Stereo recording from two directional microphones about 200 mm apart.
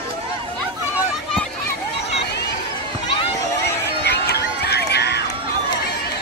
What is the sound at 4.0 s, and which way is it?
Run, 55° left (ahead or behind).